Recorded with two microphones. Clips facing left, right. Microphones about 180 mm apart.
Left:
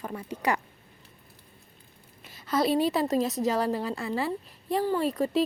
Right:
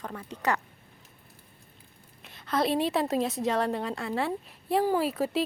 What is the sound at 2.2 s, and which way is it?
A woman's voice, 5° left (ahead or behind).